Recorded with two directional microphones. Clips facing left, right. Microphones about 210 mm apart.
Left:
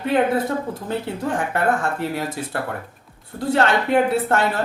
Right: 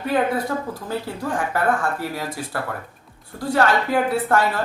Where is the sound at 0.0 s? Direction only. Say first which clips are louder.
Left 2 dB; 25° left (ahead or behind).